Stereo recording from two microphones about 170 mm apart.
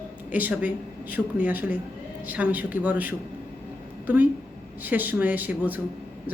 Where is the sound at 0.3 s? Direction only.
10° right (ahead or behind).